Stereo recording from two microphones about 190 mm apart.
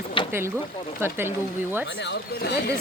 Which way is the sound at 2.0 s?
65° left (ahead or behind).